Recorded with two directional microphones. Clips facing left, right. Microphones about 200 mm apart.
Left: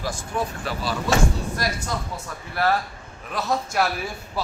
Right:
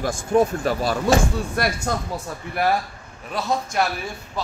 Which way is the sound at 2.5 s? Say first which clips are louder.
Right 1 dB; 15° right (ahead or behind).